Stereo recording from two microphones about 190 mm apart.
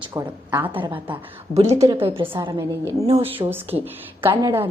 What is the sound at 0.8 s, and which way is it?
A woman's voice, 25° right (ahead or behind).